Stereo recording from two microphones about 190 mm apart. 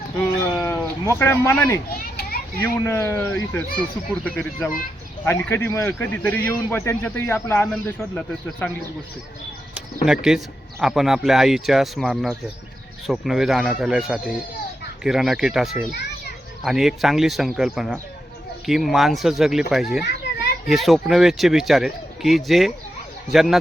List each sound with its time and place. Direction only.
0.6 s speech: 15° left (ahead or behind)
9.7 s speech: 5° right (ahead or behind)
20.1 s children playing: 60° left (ahead or behind)
20.7 s speech: centre (ahead or behind)